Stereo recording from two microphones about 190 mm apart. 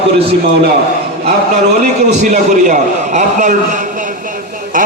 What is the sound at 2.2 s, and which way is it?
A man's voice, 40° right (ahead or behind).